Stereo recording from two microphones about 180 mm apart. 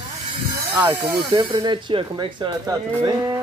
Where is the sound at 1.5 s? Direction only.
25° right (ahead or behind).